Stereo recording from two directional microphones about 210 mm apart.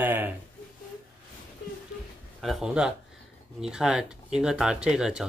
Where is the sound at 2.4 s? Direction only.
Centre (ahead or behind).